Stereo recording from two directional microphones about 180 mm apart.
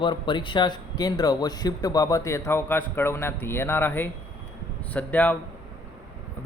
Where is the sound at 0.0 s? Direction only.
25° left (ahead or behind); by 5.4 s 10° left (ahead or behind).